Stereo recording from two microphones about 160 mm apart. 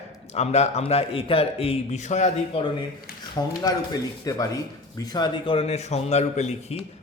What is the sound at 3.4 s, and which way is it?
A man's voice, 25° left (ahead or behind).